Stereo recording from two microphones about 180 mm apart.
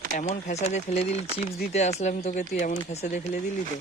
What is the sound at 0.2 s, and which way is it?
A woman's voice, 40° left (ahead or behind).